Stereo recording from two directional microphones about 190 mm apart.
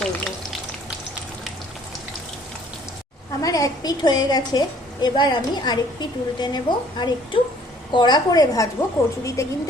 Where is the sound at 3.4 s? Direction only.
20° left (ahead or behind).